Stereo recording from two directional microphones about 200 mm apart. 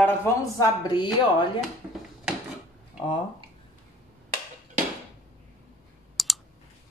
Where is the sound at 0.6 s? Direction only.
20° left (ahead or behind).